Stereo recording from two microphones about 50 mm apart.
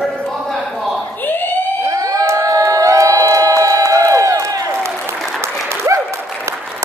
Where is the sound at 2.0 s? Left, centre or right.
Right.